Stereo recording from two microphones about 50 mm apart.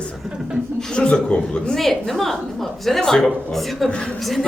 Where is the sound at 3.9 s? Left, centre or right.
Centre.